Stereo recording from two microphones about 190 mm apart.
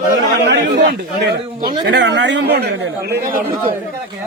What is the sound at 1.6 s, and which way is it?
A man's voice, 55° right (ahead or behind).